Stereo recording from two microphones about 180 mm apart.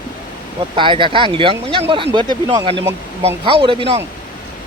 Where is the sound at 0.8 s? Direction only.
30° right (ahead or behind).